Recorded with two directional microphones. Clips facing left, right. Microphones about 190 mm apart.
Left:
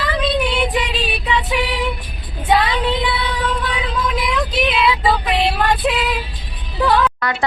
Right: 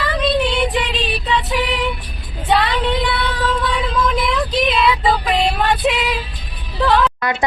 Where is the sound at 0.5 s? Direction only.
10° left (ahead or behind).